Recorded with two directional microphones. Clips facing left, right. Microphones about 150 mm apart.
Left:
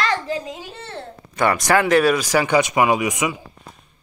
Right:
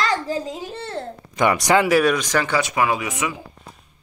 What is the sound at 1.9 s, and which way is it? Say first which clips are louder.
Speech: left 2 dB; 5° left (ahead or behind).